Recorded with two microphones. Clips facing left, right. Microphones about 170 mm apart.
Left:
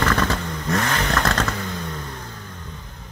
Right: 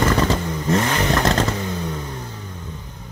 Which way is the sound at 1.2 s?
15° right (ahead or behind).